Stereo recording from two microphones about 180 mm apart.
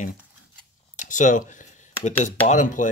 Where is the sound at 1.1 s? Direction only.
45° left (ahead or behind).